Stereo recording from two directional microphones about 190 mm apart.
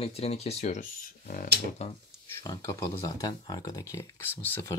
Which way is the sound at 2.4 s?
20° left (ahead or behind).